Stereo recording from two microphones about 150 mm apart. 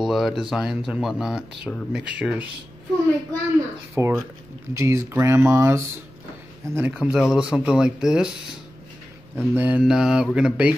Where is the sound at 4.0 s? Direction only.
15° right (ahead or behind).